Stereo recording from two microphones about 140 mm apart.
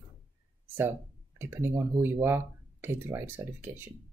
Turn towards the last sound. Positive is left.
turn(degrees=-15)  # may be behind; listen again after turning